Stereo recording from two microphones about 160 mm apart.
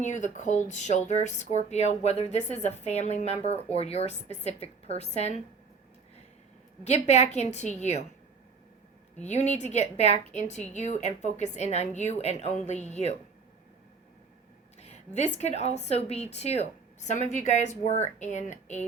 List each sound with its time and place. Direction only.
0.0 s a woman's voice: 50° left (ahead or behind)
7.1 s a woman's voice: 45° left (ahead or behind)
9.2 s a woman's voice: 45° left (ahead or behind)
14.8 s a woman's voice: 45° left (ahead or behind)